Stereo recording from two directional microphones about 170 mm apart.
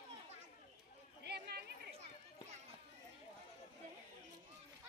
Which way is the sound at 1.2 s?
70° right (ahead or behind).